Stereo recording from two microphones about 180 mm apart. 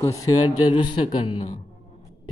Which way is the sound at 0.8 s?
25° left (ahead or behind).